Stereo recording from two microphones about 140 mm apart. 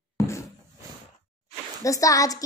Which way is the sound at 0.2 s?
20° left (ahead or behind).